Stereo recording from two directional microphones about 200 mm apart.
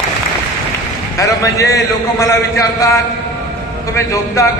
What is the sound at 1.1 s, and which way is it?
A man's voice, 15° left (ahead or behind).